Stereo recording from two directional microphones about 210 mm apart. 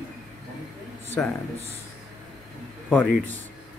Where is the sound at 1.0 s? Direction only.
10° left (ahead or behind).